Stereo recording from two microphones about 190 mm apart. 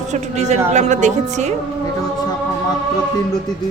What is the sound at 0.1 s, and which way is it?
A woman's voice, 35° right (ahead or behind).